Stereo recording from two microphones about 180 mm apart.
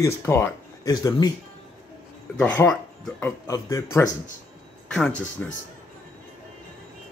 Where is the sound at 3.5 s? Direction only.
15° left (ahead or behind).